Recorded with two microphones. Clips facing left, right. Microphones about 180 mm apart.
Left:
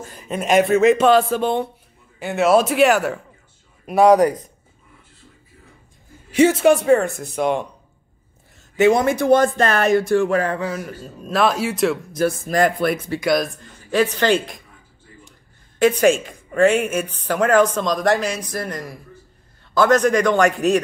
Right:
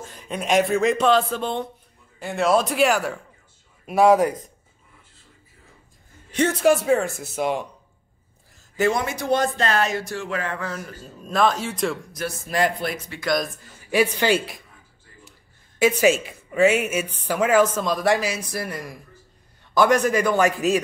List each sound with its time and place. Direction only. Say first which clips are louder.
0.0 s speech: left 4 dB; centre (ahead or behind)
6.3 s speech: left 5 dB; 5° left (ahead or behind)
8.5 s a sound: left 6 dB; centre (ahead or behind)
9.0 s speech: left 7 dB; 55° left (ahead or behind)
10.6 s speech: left 6 dB; 10° left (ahead or behind)
12.2 s speech: left 6 dB; 50° left (ahead or behind)
13.2 s speech: left 3 dB; 5° left (ahead or behind)
13.6 s a woman's voice: left 2 dB; 10° right (ahead or behind)
16.0 s a woman's voice: left 3 dB; 5° right (ahead or behind)